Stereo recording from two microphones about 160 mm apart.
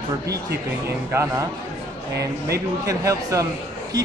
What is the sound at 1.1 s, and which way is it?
Speech, 15° right (ahead or behind).